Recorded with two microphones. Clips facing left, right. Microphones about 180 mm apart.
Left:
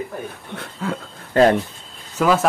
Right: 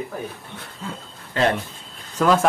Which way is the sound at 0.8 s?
80° left.